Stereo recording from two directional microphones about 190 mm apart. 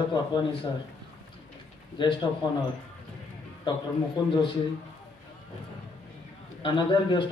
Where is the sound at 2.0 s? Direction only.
25° left (ahead or behind).